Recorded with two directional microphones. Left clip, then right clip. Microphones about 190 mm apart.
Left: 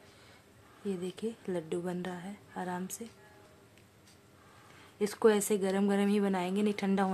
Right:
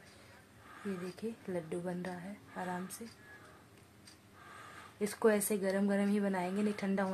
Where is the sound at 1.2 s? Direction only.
30° left (ahead or behind).